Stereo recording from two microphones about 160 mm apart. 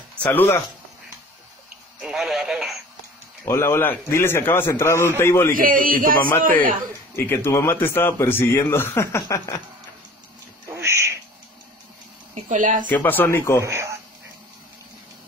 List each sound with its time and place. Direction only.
0.2 s a man's voice: 10° left (ahead or behind)
2.0 s speech: 5° right (ahead or behind)
3.4 s a man's voice: 15° left (ahead or behind)
5.5 s speech: 60° right (ahead or behind)
7.2 s a man's voice: 15° left (ahead or behind)
10.7 s a sound: 15° right (ahead or behind)
12.4 s speech: 50° right (ahead or behind)
12.8 s a man's voice: 10° left (ahead or behind)
13.6 s a man's voice: 15° right (ahead or behind)